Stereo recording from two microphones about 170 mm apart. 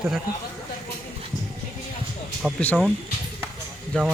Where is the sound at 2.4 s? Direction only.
10° right (ahead or behind).